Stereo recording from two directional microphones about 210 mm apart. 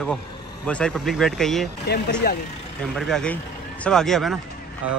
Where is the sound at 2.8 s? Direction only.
Centre (ahead or behind).